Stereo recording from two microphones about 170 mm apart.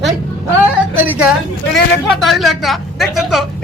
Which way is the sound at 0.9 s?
10° right (ahead or behind).